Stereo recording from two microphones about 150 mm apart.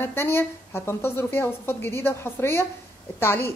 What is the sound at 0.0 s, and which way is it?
A woman's voice, 15° left (ahead or behind).